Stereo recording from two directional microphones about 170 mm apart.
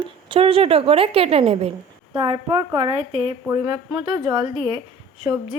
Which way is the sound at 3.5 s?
25° right (ahead or behind).